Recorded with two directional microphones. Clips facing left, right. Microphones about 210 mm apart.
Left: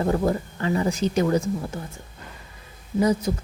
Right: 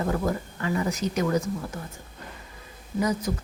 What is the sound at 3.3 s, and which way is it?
Speech, 30° left (ahead or behind).